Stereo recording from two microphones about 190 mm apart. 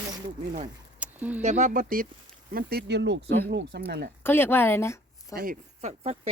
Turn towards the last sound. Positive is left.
turn(degrees=-35)  # may be behind; listen again after turning